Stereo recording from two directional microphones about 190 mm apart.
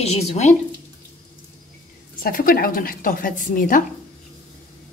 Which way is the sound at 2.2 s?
50° left (ahead or behind).